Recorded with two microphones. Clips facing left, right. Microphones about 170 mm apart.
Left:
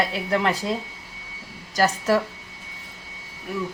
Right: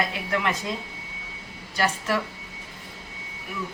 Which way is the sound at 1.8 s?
40° left (ahead or behind).